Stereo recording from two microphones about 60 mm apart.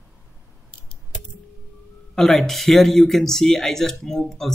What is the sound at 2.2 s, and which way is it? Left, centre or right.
Speech, centre.